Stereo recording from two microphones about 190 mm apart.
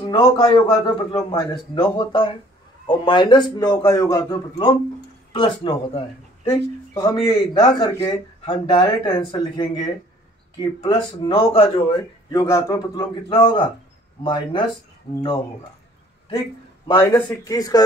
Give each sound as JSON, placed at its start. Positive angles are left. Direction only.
{"t": 0.0, "sound": "speech", "side_deg": 25}
{"t": 12.3, "sound": "speech", "side_deg": 15}
{"t": 17.3, "sound": "speech", "side_deg": 20}